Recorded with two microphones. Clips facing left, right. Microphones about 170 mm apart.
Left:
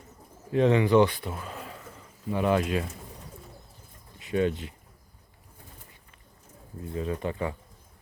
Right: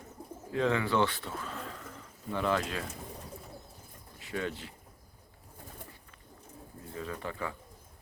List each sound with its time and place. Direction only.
0.5 s speech: 20° left (ahead or behind)
4.2 s speech: 20° left (ahead or behind)
6.9 s speech: 20° left (ahead or behind)